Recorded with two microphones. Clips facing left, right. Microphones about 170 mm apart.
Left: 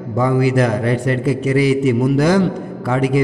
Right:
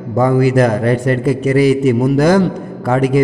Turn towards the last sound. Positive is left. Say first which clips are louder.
# right 3 dB
turn(degrees=-45)  # may be behind; listen again after turning